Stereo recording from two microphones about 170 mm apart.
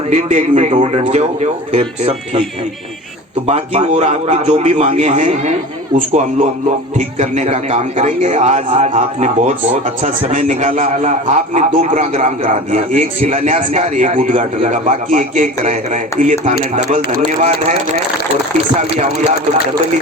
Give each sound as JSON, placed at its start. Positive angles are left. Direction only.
{"t": 0.1, "sound": "a man's voice", "side_deg": -40}
{"t": 3.4, "sound": "a man's voice", "side_deg": -40}